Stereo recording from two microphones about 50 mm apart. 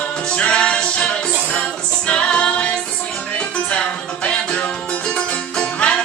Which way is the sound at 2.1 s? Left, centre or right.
Left.